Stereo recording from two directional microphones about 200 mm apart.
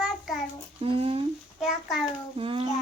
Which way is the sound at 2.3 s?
25° right (ahead or behind).